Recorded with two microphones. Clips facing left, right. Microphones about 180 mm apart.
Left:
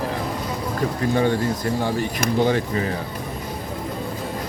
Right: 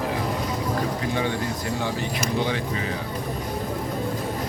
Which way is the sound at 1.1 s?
45° left (ahead or behind).